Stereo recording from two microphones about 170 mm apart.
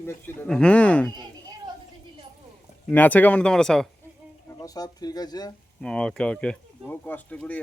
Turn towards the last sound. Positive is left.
turn(degrees=10)  # may be behind; listen again after turning